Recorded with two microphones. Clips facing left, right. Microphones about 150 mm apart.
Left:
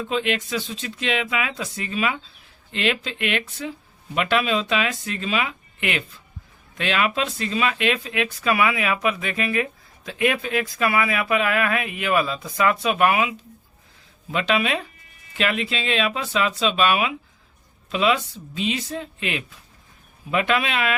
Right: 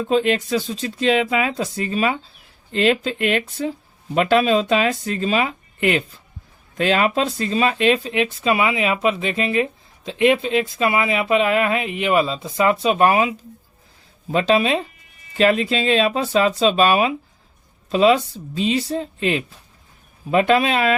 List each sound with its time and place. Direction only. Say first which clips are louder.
0.0 s speech: right 6 dB; 40° right (ahead or behind)